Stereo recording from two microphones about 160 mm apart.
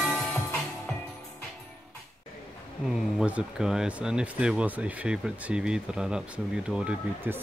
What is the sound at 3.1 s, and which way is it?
Speech, 5° right (ahead or behind).